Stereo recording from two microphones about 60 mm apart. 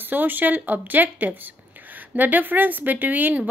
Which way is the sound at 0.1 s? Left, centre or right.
Right.